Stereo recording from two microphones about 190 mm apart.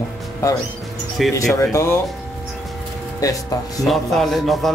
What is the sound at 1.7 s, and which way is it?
Speech, 15° left (ahead or behind).